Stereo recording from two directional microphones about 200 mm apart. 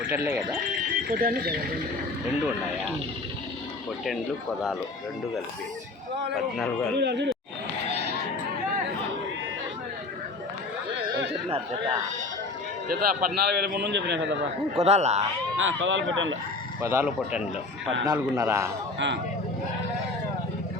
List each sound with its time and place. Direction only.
0.1 s a man's voice: 10° right (ahead or behind)
1.0 s speech: 45° right (ahead or behind)
6.3 s a man's voice: centre (ahead or behind)
7.0 s a man's voice: 60° right (ahead or behind)
12.9 s a man's voice: 50° right (ahead or behind)
14.8 s speech: 35° right (ahead or behind)
15.5 s speech: 75° right (ahead or behind)
16.8 s a man's voice: 10° right (ahead or behind)
18.9 s a man's voice: 65° right (ahead or behind)